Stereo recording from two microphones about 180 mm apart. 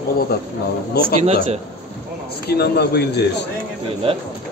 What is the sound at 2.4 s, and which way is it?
Speech, 65° left (ahead or behind).